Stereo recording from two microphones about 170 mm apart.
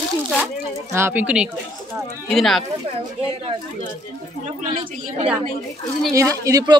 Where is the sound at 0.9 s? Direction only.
10° right (ahead or behind).